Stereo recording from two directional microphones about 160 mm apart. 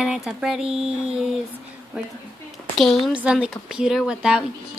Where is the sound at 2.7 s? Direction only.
Centre (ahead or behind).